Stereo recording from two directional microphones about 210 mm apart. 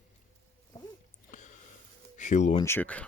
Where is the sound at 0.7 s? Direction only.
20° left (ahead or behind).